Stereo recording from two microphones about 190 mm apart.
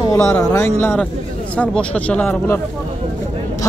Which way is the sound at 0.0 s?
15° left (ahead or behind).